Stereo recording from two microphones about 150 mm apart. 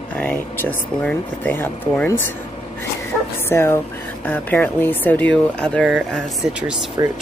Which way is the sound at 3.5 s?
15° left (ahead or behind).